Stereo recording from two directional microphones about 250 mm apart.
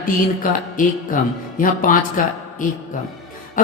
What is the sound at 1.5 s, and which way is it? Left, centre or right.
A man's voice, left.